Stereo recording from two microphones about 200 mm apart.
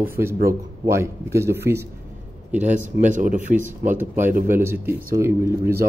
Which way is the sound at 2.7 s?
40° right (ahead or behind).